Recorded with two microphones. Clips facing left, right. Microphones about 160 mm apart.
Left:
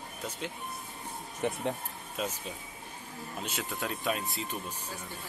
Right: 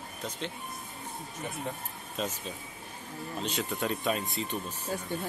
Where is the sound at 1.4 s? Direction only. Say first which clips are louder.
Left 9 dB; 65° left (ahead or behind).